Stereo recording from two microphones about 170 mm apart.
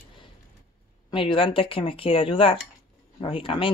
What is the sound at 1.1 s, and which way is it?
Speech, 30° left (ahead or behind).